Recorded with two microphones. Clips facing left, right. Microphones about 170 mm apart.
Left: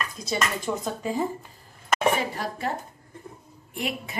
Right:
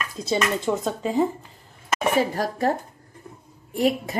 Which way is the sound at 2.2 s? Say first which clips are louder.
Right 7 dB; 40° right (ahead or behind).